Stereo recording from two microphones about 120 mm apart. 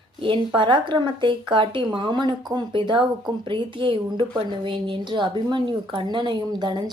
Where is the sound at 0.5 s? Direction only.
40° right (ahead or behind).